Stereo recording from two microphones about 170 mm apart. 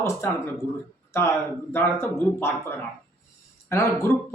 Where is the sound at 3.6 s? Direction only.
15° left (ahead or behind).